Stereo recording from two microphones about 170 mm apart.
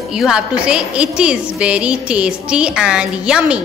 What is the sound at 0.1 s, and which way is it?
A woman's voice, 5° right (ahead or behind).